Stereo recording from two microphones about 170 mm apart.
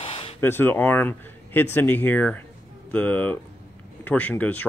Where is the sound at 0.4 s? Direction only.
10° left (ahead or behind).